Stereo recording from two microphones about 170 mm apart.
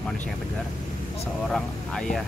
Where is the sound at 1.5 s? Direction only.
5° left (ahead or behind).